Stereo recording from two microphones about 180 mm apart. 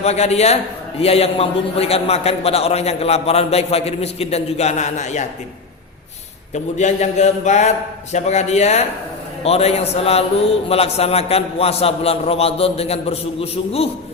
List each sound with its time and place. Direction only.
0.0 s a man's voice: 35° left (ahead or behind)
6.5 s a man's voice: 40° left (ahead or behind)